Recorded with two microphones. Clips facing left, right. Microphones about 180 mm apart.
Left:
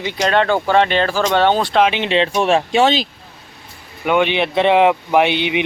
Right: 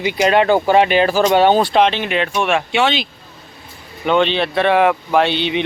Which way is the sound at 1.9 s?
25° left (ahead or behind).